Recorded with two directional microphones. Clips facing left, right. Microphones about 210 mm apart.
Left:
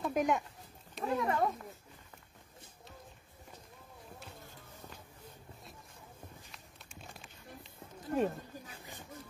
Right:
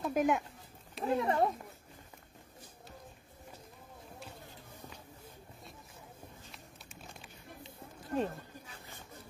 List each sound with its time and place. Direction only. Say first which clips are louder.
0.0 s a sound: right 1 dB; centre (ahead or behind)
1.0 s speech: right 2 dB; 30° right (ahead or behind)
8.1 s roaring cats: left 2 dB; 10° left (ahead or behind)